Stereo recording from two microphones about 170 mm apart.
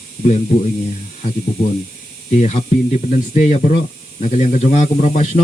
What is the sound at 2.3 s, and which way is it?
Speech, 45° left (ahead or behind).